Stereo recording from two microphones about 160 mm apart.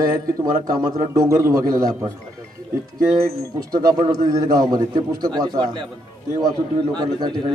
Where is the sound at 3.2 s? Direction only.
75° right (ahead or behind).